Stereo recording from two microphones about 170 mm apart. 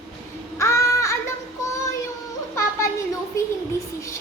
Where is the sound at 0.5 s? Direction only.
15° left (ahead or behind).